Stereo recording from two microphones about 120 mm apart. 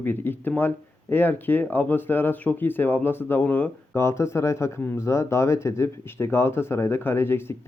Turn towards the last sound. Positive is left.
turn(degrees=20)  # may be behind; listen again after turning